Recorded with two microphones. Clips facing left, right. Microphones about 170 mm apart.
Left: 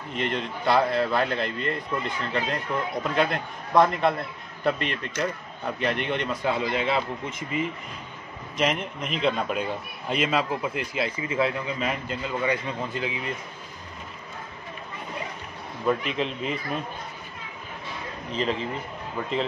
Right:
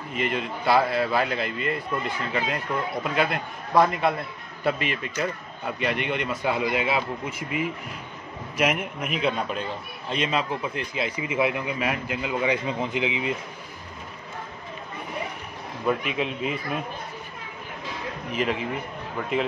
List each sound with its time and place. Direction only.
0.1 s a man's voice: 5° right (ahead or behind)
6.4 s a man's voice: 15° right (ahead or behind); by 11.1 s 5° left (ahead or behind)
11.1 s speech: 15° right (ahead or behind)
15.9 s speech: 5° right (ahead or behind)
18.3 s speech: 10° right (ahead or behind)